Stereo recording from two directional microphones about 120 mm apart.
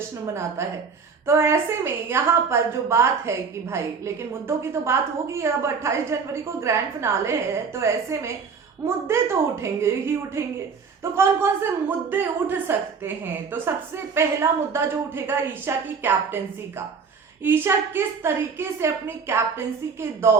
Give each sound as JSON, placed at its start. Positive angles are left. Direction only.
{"t": 0.3, "sound": "a woman's voice", "side_deg": -20}